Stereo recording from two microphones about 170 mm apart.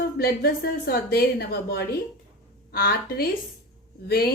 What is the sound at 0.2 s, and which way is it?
A woman's voice, 60° left (ahead or behind).